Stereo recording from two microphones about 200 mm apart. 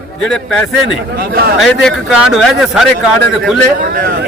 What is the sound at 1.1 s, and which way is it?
Speech, 45° right (ahead or behind).